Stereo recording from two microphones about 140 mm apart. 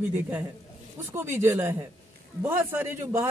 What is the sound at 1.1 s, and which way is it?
A man's voice, 20° right (ahead or behind).